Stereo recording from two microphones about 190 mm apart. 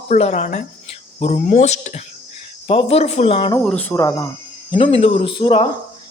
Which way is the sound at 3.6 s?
5° left (ahead or behind).